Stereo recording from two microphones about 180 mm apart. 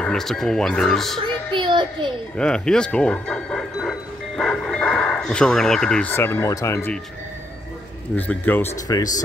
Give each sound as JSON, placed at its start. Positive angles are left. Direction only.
{"t": 0.0, "sound": "speech", "side_deg": 5}
{"t": 1.5, "sound": "child singing", "side_deg": -25}
{"t": 2.3, "sound": "speech", "side_deg": 5}
{"t": 8.2, "sound": "speech", "side_deg": 10}